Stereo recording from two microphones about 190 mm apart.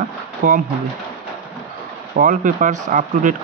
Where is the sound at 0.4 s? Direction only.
45° right (ahead or behind).